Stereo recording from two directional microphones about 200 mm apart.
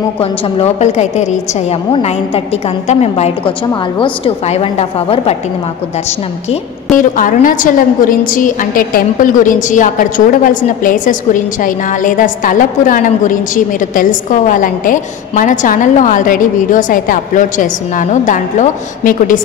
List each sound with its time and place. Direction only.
0.2 s a woman's voice: 30° left (ahead or behind)
7.0 s a woman's voice: 40° left (ahead or behind)